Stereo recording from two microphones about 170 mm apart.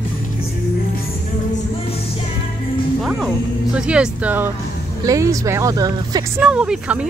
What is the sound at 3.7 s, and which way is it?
Speech, 5° right (ahead or behind).